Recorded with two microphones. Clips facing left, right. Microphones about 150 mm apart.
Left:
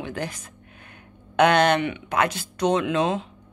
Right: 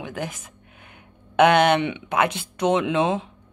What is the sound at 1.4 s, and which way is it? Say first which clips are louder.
Speech: right 2 dB; 20° right (ahead or behind).